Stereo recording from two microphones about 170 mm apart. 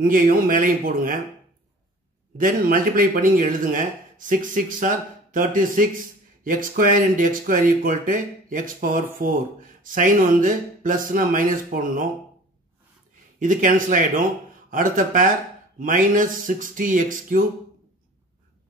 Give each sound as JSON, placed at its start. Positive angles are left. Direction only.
{"t": 0.0, "sound": "speech", "side_deg": -55}
{"t": 2.3, "sound": "speech", "side_deg": -55}
{"t": 13.4, "sound": "speech", "side_deg": -50}